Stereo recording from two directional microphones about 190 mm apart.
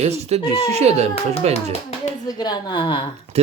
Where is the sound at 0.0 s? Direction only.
35° right (ahead or behind).